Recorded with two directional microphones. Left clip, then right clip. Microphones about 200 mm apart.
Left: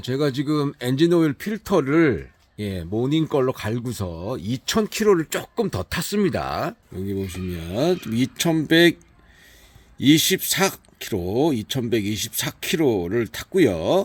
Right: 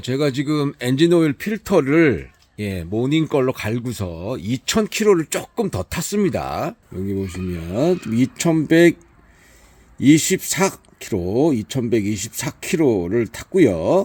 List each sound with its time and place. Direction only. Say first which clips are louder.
0.0 s speech: right 3 dB; centre (ahead or behind)
7.3 s speech: right 3 dB; 15° right (ahead or behind)
10.1 s speech: right 2 dB; 15° right (ahead or behind)